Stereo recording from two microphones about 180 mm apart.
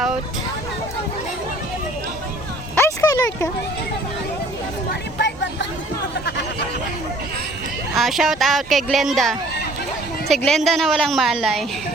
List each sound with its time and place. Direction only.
2.7 s a sound: 15° left (ahead or behind)
4.9 s vehicle: 75° left (ahead or behind)
7.9 s speech: centre (ahead or behind)